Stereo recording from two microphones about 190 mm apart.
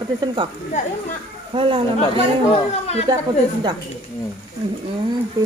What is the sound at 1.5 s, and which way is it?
Speech, 30° right (ahead or behind).